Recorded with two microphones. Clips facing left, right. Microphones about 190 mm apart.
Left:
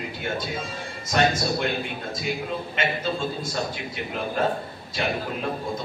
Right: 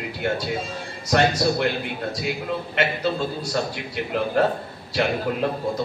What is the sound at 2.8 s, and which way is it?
Speech, 70° right (ahead or behind).